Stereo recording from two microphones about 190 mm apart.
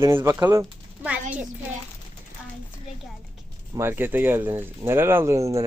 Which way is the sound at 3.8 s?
10° right (ahead or behind).